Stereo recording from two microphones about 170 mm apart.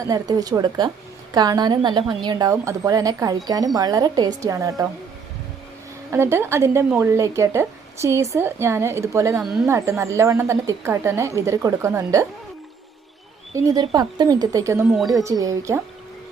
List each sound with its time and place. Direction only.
0.0 s a woman's voice: 20° right (ahead or behind)
6.1 s speech: 15° right (ahead or behind)
13.7 s a woman's voice: 25° right (ahead or behind)
14.8 s speech: centre (ahead or behind)
15.1 s a woman's voice: 20° right (ahead or behind)